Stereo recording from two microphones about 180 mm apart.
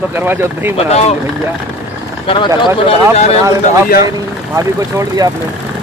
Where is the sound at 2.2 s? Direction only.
30° left (ahead or behind).